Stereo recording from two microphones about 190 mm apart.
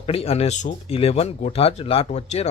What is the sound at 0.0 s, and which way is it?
Speech, 30° left (ahead or behind).